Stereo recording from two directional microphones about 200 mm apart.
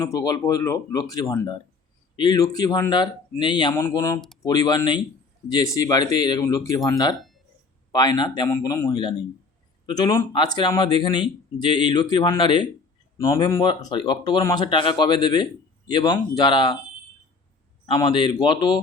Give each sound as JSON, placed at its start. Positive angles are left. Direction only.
{"t": 0.0, "sound": "speech", "side_deg": 20}
{"t": 17.8, "sound": "speech", "side_deg": 25}